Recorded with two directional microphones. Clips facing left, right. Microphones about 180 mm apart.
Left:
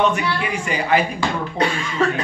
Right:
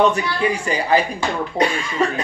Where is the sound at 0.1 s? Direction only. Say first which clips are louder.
Right 2 dB; 35° right (ahead or behind).